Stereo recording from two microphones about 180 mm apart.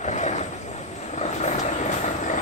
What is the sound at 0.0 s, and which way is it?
Vehicle, 40° left (ahead or behind).